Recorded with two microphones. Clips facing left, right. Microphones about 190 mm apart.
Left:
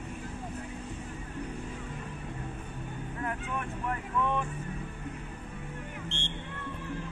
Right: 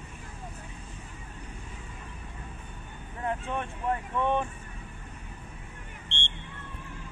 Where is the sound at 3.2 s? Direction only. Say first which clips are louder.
Right 5 dB; 25° right (ahead or behind).